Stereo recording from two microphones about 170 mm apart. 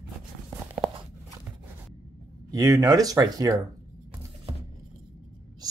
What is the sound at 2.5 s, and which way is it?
Speech, 20° right (ahead or behind).